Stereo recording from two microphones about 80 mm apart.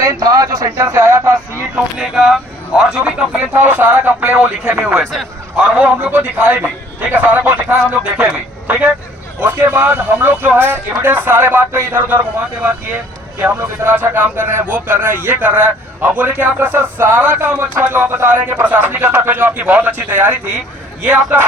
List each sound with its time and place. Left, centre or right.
0.0 s speech: right
0.9 s speech: right
2.0 s speech: centre
3.6 s a man's voice: right
13.4 s speech: right